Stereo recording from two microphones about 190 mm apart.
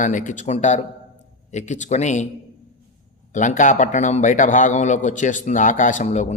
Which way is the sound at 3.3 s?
40° left (ahead or behind).